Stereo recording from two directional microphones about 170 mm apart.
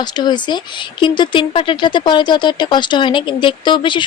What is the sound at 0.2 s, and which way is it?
A woman's voice, 25° left (ahead or behind).